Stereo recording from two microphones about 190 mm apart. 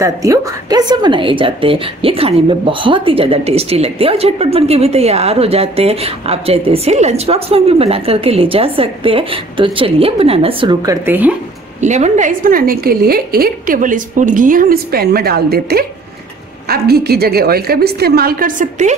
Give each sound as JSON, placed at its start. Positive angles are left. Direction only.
{"t": 0.0, "sound": "a woman's voice", "side_deg": -15}
{"t": 11.1, "sound": "speech", "side_deg": -10}
{"t": 11.8, "sound": "a woman's voice", "side_deg": -40}